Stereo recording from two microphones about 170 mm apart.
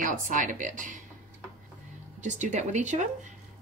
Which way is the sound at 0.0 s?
50° right (ahead or behind).